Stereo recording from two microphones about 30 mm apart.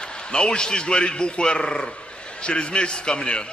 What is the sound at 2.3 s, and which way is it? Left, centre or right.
A man's voice, left.